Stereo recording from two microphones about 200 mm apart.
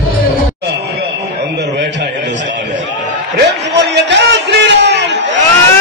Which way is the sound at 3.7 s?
60° right (ahead or behind).